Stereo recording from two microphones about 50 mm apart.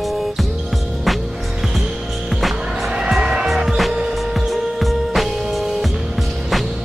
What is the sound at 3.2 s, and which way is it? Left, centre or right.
Music, centre.